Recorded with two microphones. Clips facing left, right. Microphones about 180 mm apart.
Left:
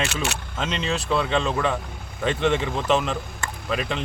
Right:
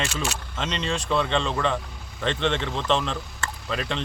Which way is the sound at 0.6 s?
5° left (ahead or behind).